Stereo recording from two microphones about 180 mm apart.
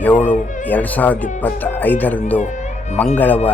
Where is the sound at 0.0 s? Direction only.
10° left (ahead or behind).